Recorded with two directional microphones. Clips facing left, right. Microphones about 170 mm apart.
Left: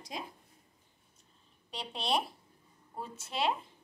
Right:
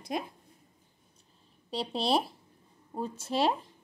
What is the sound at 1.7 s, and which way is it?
Speech, 35° right (ahead or behind).